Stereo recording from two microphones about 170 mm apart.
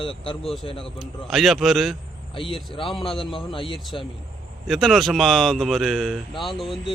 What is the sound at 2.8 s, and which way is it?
Speech, centre (ahead or behind).